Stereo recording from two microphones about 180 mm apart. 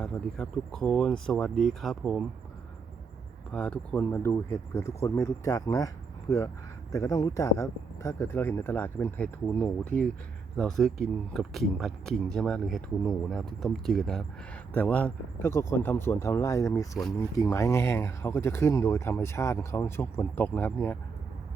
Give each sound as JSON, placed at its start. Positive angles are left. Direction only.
{"t": 0.0, "sound": "speech", "side_deg": 5}
{"t": 3.5, "sound": "speech", "side_deg": 5}